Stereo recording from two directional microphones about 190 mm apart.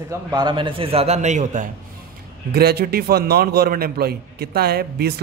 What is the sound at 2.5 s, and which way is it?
A man's voice, 55° right (ahead or behind).